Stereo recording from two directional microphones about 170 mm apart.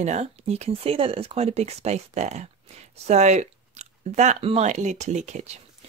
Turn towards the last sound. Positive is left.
turn(degrees=-45)  # may be behind; listen again after turning